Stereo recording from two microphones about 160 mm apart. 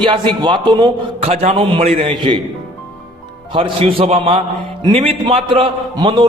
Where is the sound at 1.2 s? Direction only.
40° right (ahead or behind).